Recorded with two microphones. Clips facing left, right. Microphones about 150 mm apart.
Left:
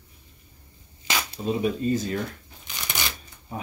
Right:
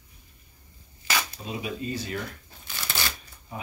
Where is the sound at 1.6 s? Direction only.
40° left (ahead or behind).